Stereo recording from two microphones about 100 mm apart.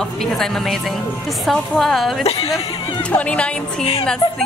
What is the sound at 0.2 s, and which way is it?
Speech, 5° left (ahead or behind).